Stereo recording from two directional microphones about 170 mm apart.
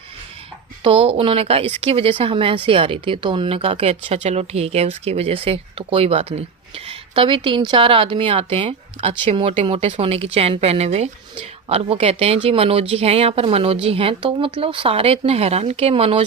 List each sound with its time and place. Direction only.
0.9 s speech: 30° right (ahead or behind)